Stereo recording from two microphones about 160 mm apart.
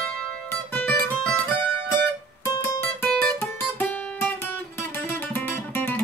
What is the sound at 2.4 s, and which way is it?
Music, 15° left (ahead or behind).